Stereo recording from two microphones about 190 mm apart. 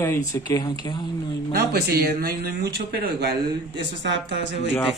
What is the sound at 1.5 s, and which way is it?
Speech, 55° right (ahead or behind).